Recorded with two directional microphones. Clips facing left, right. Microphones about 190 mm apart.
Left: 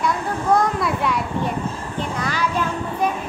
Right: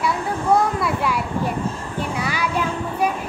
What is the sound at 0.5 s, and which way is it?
Children playing, 5° right (ahead or behind).